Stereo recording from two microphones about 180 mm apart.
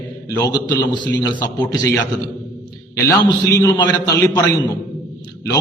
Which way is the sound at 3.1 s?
20° left (ahead or behind).